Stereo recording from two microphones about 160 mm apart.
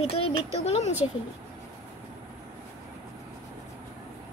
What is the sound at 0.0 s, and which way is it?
Speech, 35° left (ahead or behind).